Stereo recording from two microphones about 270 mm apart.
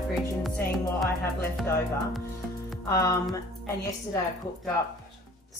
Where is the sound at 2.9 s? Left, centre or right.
Centre.